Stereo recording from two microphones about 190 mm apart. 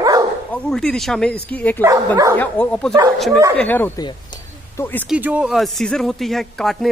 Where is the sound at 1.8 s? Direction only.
15° right (ahead or behind).